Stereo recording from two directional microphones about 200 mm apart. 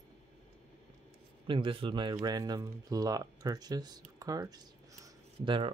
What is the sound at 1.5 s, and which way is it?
Speech, 25° right (ahead or behind).